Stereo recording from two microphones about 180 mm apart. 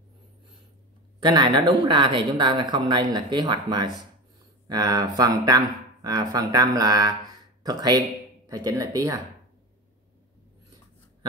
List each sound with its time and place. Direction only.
1.2 s speech: 25° right (ahead or behind)